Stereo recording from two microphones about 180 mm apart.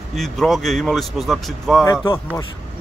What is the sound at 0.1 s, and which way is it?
Speech, centre (ahead or behind).